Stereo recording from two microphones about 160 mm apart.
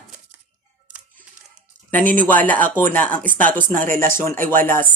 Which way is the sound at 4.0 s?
15° left (ahead or behind).